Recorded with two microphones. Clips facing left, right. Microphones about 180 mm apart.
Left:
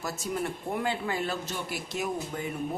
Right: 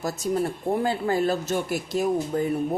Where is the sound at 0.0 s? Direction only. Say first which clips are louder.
Right 7 dB; 35° right (ahead or behind).